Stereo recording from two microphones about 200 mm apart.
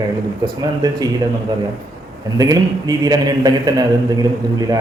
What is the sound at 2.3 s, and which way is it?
A man's voice, 20° right (ahead or behind).